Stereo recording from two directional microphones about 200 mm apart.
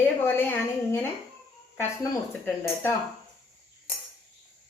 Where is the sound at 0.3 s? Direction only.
10° left (ahead or behind).